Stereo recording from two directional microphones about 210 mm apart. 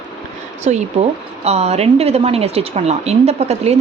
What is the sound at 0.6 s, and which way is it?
A woman's voice, 35° right (ahead or behind).